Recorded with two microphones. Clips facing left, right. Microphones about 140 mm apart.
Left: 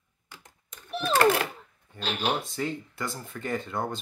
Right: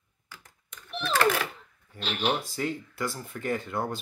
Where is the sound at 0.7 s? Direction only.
40° left (ahead or behind).